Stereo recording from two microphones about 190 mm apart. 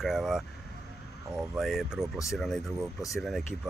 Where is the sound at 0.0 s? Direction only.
Centre (ahead or behind).